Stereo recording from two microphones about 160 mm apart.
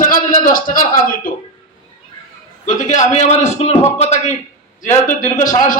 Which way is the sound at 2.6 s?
50° left (ahead or behind).